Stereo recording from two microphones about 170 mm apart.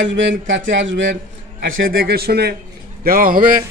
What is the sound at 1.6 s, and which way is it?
Speech, 60° right (ahead or behind).